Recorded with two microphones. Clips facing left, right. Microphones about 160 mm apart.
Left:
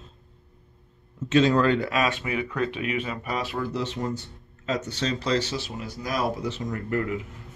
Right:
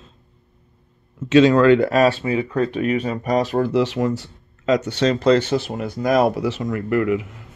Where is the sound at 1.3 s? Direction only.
90° right.